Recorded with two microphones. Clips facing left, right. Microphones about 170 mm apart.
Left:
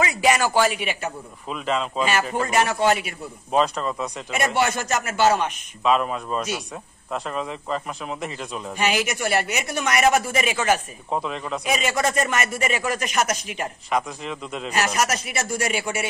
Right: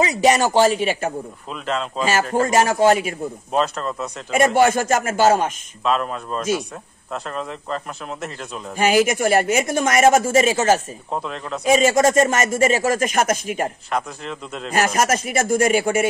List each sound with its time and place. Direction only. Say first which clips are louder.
0.0 s a man's voice: right 4 dB; 35° right (ahead or behind)
1.5 s speech: left 1 dB; centre (ahead or behind)
2.3 s speech: right 5 dB; 40° right (ahead or behind)
3.5 s speech: left 1 dB; centre (ahead or behind)
4.3 s speech: right 7 dB; 45° right (ahead or behind)
5.9 s speech: left 1 dB; 5° left (ahead or behind)
8.7 s speech: right 7 dB; 45° right (ahead or behind)
11.1 s speech: left 1 dB; centre (ahead or behind)
11.6 s speech: right 9 dB; 40° right (ahead or behind)
13.8 s speech: even; centre (ahead or behind)
14.7 s speech: right 5 dB; 50° right (ahead or behind)